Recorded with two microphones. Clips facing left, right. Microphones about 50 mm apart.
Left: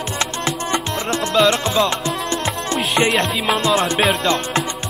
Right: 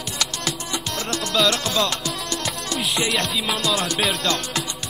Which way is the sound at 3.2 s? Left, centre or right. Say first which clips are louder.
Left 5 dB; left.